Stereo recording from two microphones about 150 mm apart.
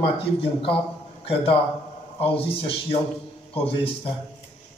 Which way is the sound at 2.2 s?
40° left (ahead or behind).